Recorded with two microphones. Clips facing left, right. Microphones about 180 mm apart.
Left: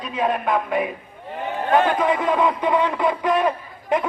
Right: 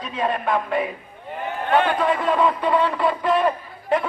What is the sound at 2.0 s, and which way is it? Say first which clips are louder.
A man's voice: even; 15° left (ahead or behind).